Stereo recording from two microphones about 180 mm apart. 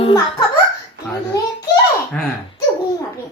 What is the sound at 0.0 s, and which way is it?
Speech, 25° left (ahead or behind).